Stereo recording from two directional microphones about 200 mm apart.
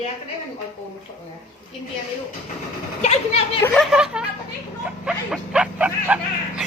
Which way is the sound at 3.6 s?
10° left (ahead or behind).